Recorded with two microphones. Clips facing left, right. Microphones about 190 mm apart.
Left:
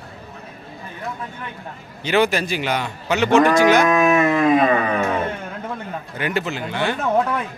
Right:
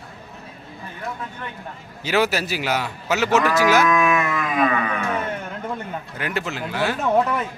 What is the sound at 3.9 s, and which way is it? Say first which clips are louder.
Dog: left 4 dB; 40° left (ahead or behind).